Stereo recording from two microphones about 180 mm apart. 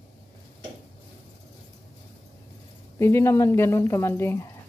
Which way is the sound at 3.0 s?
15° left (ahead or behind).